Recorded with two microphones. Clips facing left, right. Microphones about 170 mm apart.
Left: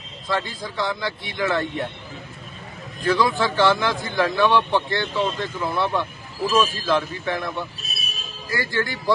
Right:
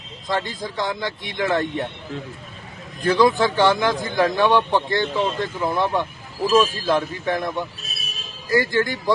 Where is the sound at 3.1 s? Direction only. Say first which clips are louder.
Right 4 dB; 20° right (ahead or behind).